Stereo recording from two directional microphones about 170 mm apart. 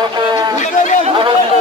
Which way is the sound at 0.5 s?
45° left (ahead or behind).